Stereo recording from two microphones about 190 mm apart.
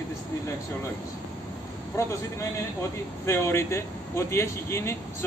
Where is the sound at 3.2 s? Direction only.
15° left (ahead or behind).